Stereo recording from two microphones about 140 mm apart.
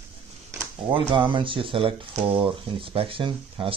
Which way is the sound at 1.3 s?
35° right (ahead or behind).